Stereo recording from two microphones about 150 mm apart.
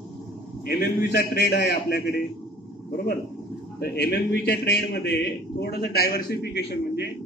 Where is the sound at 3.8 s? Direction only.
90° left.